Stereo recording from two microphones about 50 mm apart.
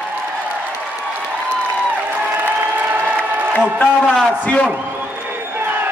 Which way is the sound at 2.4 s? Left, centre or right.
Right.